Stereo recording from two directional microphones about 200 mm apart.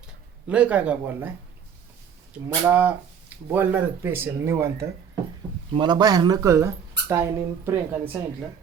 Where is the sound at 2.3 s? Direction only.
10° right (ahead or behind).